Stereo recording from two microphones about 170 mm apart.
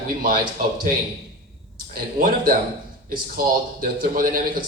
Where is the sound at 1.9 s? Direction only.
55° right (ahead or behind).